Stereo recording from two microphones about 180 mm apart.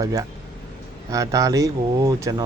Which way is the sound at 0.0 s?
20° right (ahead or behind).